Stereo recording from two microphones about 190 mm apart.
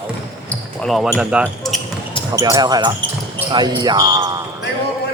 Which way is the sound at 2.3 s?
15° right (ahead or behind).